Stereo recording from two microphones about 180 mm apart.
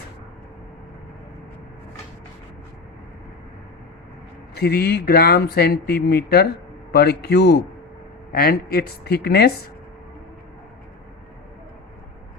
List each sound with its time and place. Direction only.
4.5 s speech: 60° left (ahead or behind)